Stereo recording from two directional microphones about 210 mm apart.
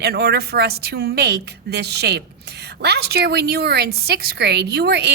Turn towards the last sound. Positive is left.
turn(degrees=-50)  # may be behind; listen again after turning